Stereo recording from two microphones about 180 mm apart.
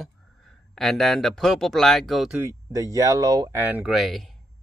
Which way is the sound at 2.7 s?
20° right (ahead or behind).